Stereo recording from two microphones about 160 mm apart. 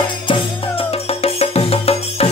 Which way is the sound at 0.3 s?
35° left (ahead or behind).